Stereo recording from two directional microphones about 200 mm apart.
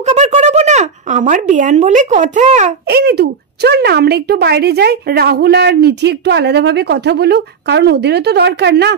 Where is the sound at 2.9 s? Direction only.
55° right (ahead or behind).